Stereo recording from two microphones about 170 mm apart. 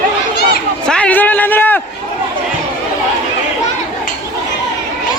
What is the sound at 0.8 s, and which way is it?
Run, 5° left (ahead or behind).